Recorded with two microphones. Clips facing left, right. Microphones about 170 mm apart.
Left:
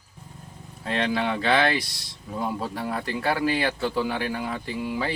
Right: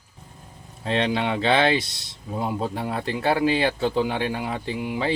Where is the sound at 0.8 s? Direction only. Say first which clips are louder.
Right 2 dB; 25° right (ahead or behind).